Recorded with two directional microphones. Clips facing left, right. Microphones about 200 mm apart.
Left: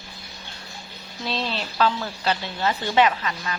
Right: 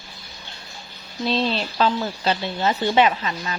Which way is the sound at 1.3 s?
15° right (ahead or behind).